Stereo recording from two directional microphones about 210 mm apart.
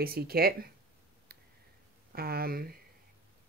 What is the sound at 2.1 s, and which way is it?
Speech, 45° right (ahead or behind).